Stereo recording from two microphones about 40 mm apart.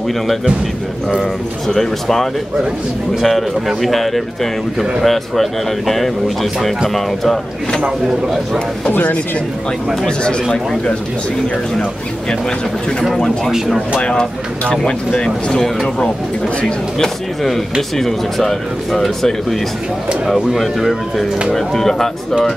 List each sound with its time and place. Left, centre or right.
1.2 s speech: centre
10.0 s speech: left
13.9 s speech: left
17.9 s speech: centre